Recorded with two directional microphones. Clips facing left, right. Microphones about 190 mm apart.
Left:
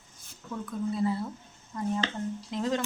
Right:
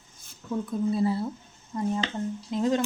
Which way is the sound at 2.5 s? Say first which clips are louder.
Right 5 dB; 20° right (ahead or behind).